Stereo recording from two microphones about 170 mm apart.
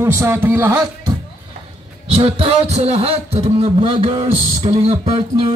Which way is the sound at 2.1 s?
35° right (ahead or behind).